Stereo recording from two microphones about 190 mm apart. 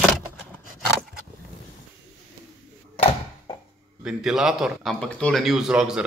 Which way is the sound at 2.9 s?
30° left (ahead or behind).